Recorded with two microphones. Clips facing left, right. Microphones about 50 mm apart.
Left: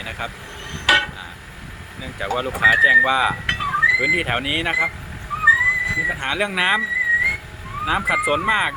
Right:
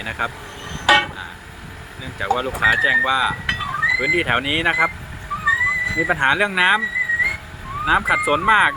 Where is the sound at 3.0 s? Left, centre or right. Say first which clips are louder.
Left 1 dB; centre.